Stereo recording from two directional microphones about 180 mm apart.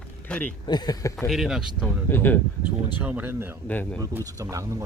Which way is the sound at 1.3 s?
Centre (ahead or behind).